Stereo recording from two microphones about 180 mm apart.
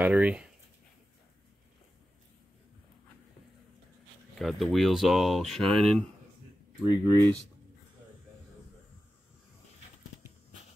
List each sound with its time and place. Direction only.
0.0 s speech: 10° right (ahead or behind)
4.4 s speech: centre (ahead or behind)
6.9 s speech: 15° left (ahead or behind)